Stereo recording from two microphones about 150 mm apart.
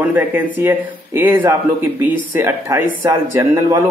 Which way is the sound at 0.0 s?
10° right (ahead or behind).